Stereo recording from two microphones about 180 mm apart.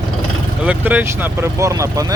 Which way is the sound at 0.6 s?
10° right (ahead or behind).